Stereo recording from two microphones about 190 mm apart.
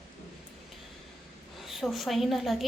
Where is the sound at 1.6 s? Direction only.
Centre (ahead or behind).